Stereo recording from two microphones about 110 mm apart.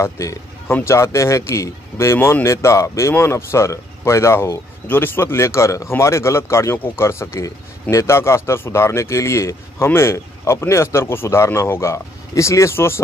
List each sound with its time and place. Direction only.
0.0 s speech: 25° left (ahead or behind)